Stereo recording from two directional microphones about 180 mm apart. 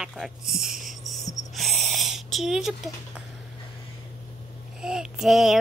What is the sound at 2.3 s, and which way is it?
Speech, centre (ahead or behind).